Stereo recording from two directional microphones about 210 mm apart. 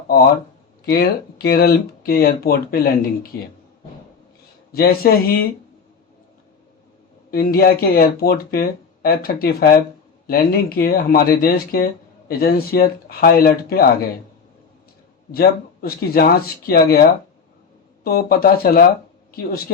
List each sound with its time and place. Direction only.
0.9 s speech: 45° left (ahead or behind)
4.7 s speech: 45° left (ahead or behind)
7.3 s speech: 45° left (ahead or behind)
15.3 s speech: 45° left (ahead or behind)